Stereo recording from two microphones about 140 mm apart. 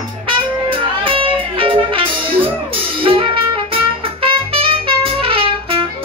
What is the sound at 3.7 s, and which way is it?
Music, 40° right (ahead or behind).